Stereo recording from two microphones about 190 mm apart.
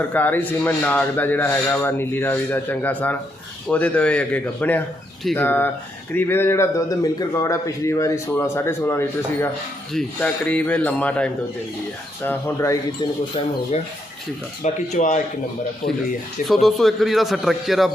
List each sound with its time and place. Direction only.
0.1 s a man's voice: 10° left (ahead or behind)
14.6 s speech: 40° left (ahead or behind)
16.5 s a man's voice: centre (ahead or behind)